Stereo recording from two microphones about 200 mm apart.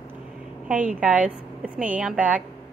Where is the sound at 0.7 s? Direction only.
10° right (ahead or behind).